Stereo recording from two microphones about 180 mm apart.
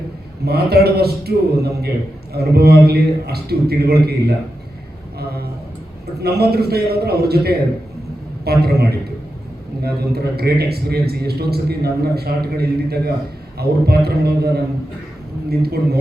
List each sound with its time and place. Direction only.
0.4 s a man's voice: 60° right (ahead or behind)
6.2 s a man's voice: 60° right (ahead or behind)